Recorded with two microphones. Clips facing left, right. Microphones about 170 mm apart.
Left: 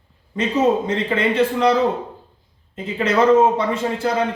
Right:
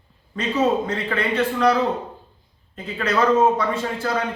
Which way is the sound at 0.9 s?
20° left (ahead or behind).